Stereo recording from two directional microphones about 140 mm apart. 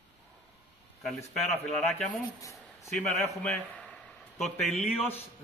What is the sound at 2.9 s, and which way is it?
A man's voice, centre (ahead or behind).